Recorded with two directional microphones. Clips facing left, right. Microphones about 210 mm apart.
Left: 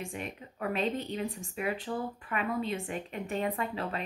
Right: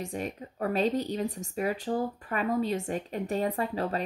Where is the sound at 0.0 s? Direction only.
40° right (ahead or behind).